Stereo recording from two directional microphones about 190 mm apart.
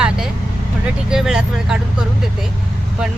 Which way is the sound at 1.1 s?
5° right (ahead or behind).